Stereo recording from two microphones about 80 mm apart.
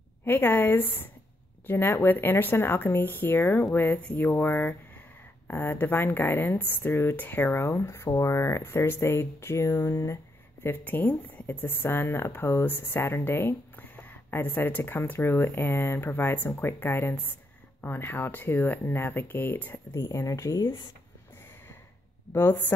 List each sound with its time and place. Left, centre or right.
0.2 s speech: left
10.6 s speech: left
20.6 s speech: left
22.3 s a woman's voice: left